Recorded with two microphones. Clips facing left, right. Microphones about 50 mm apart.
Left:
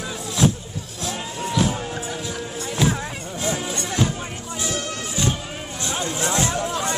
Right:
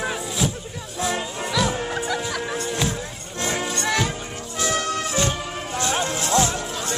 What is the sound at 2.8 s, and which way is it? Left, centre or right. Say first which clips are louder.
Music: left 7 dB; centre.